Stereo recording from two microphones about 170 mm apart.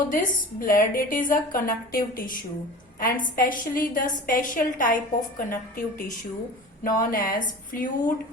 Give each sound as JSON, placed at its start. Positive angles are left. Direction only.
{"t": 0.1, "sound": "a woman's voice", "side_deg": 55}